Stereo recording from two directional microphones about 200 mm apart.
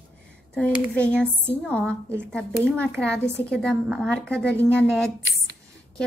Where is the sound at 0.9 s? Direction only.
5° left (ahead or behind).